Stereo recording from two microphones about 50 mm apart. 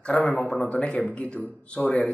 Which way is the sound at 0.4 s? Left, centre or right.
Centre.